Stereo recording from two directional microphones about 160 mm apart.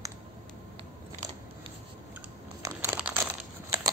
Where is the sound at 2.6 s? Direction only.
15° right (ahead or behind).